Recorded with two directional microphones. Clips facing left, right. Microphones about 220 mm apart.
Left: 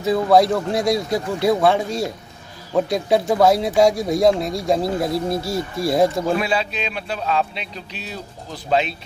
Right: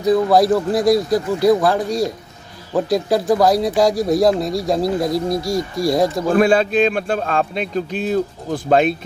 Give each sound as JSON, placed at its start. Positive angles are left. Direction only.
{"t": 0.0, "sound": "speech", "side_deg": 0}
{"t": 6.3, "sound": "a man's voice", "side_deg": -50}